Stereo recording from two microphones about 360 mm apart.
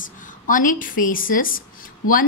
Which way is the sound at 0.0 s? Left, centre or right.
Left.